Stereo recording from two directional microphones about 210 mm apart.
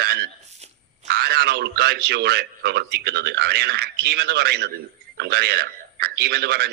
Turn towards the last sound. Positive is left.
turn(degrees=-50)  # may be behind; listen again after turning